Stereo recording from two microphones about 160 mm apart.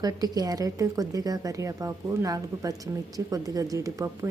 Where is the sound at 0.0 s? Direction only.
25° right (ahead or behind).